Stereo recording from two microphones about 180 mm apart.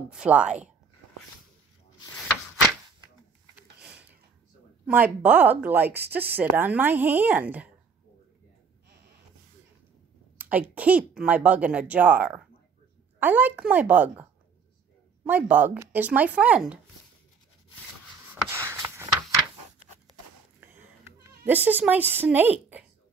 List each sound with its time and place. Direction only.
0.1 s a woman's voice: 5° right (ahead or behind)
3.5 s a sound: 5° right (ahead or behind)
4.8 s speech: 10° right (ahead or behind)
10.3 s speech: 10° right (ahead or behind)
15.2 s speech: 10° right (ahead or behind)
18.3 s a sound: 15° right (ahead or behind)
20.6 s bleat: 10° right (ahead or behind)